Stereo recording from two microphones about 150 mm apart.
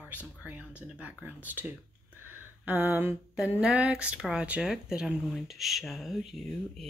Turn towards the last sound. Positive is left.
turn(degrees=0)  # may be behind; listen again after turning